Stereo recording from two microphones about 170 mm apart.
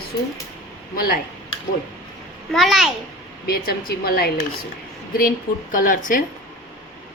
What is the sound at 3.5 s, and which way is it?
Speech, 65° left (ahead or behind).